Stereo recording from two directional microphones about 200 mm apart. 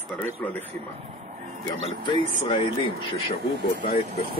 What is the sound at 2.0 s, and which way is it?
Speech, 25° left (ahead or behind).